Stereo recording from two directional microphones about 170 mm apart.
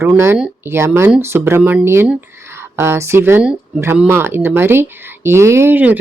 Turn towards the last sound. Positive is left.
turn(degrees=-10)  # may be behind; listen again after turning